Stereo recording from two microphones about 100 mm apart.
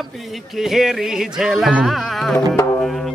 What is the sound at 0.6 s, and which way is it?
Speech, 5° right (ahead or behind).